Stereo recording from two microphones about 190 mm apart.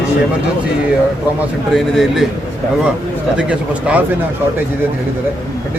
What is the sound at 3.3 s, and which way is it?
Speech, 5° right (ahead or behind).